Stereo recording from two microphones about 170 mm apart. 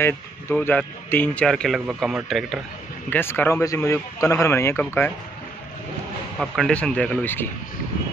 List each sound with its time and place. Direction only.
0.0 s speech: 15° left (ahead or behind)
3.1 s speech: 10° left (ahead or behind)
6.4 s speech: centre (ahead or behind)